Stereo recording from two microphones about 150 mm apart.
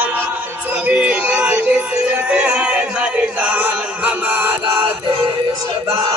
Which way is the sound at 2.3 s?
10° right (ahead or behind).